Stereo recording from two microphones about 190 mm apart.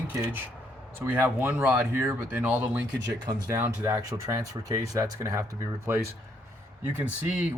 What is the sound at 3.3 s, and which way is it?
Speech, 20° right (ahead or behind).